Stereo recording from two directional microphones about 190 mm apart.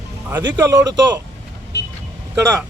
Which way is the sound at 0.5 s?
15° right (ahead or behind).